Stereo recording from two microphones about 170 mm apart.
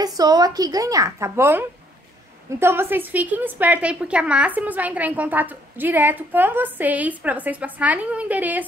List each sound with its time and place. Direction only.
0.0 s a woman's voice: 20° right (ahead or behind)